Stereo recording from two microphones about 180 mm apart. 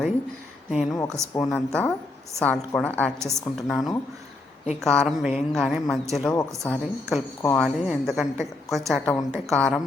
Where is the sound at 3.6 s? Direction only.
Centre (ahead or behind).